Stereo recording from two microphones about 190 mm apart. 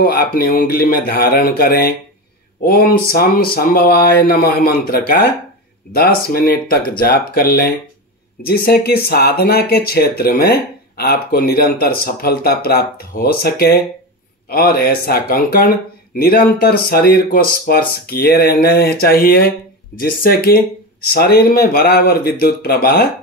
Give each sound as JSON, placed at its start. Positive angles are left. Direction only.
{"t": 0.0, "sound": "speech", "side_deg": 50}